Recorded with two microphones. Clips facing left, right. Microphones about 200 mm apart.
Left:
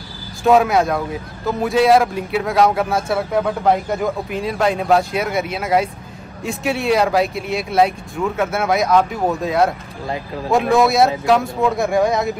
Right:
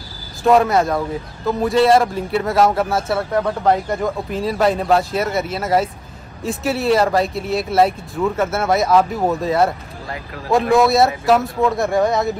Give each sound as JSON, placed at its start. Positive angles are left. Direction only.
{"t": 0.4, "sound": "speech", "side_deg": 0}
{"t": 10.0, "sound": "speech", "side_deg": 25}
{"t": 10.5, "sound": "speech", "side_deg": 0}